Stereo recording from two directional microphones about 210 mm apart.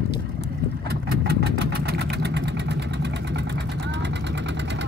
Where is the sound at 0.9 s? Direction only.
50° right (ahead or behind).